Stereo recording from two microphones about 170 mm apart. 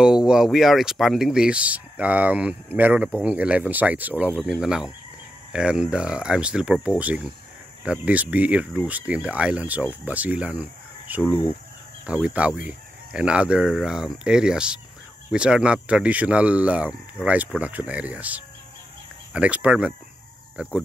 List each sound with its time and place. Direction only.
0.0 s speech: 5° right (ahead or behind)
11.2 s speech: 20° left (ahead or behind)
12.1 s speech: 5° right (ahead or behind)